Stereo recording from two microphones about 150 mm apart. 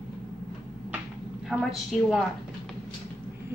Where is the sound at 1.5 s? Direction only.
Centre (ahead or behind).